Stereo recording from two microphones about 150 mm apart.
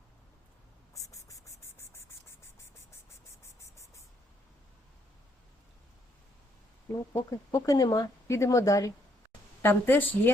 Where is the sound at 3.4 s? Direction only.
20° left (ahead or behind).